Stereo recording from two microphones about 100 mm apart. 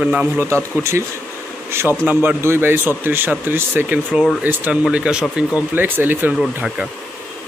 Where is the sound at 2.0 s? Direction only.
20° right (ahead or behind).